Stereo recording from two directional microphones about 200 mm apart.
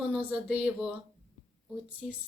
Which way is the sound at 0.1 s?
5° right (ahead or behind).